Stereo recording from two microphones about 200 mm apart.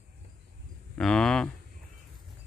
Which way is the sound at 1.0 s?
5° left (ahead or behind).